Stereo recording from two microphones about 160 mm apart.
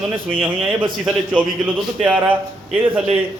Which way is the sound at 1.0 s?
10° right (ahead or behind).